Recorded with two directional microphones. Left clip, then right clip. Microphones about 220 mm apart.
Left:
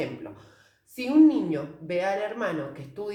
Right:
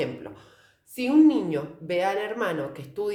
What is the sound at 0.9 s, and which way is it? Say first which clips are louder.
A woman's voice: even; 40° right (ahead or behind).